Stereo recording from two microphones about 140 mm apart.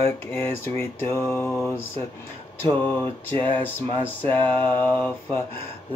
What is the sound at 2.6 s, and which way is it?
Speech, 15° left (ahead or behind).